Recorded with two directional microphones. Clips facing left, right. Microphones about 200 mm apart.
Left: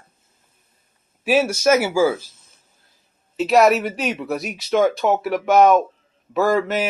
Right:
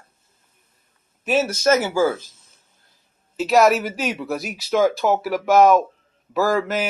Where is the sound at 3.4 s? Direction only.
Centre (ahead or behind).